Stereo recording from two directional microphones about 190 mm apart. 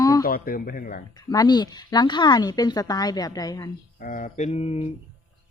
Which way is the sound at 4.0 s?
45° left (ahead or behind).